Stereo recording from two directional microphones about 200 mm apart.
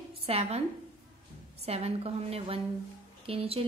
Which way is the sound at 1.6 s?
30° right (ahead or behind).